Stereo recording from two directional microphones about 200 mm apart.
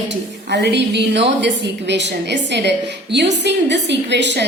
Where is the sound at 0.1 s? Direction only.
60° right (ahead or behind).